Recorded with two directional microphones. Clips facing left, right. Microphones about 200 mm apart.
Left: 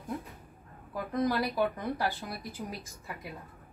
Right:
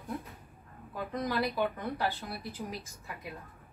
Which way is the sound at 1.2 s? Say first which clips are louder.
Left 3 dB; 10° left (ahead or behind).